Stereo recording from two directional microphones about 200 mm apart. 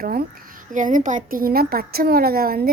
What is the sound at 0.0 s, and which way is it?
A child's voice, 45° right (ahead or behind).